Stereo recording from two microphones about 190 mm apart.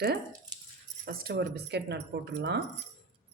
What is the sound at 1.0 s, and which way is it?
Speech, 55° right (ahead or behind).